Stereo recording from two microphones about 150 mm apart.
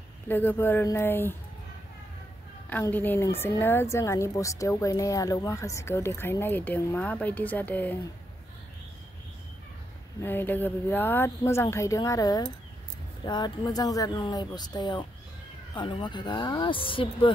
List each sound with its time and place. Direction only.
0.3 s a woman's voice: 15° left (ahead or behind)
2.7 s a woman's voice: 10° left (ahead or behind)
10.2 s a woman's voice: 15° left (ahead or behind); by 17.3 s 35° left (ahead or behind)